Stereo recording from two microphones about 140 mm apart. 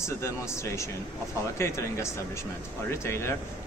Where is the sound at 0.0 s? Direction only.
20° left (ahead or behind).